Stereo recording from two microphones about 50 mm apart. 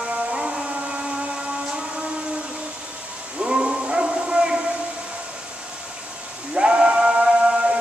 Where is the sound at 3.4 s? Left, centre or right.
Centre.